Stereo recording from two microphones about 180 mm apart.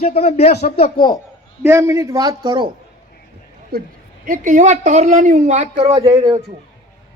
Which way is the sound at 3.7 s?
55° right (ahead or behind).